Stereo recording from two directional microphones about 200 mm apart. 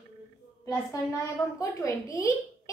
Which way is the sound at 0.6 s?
15° left (ahead or behind).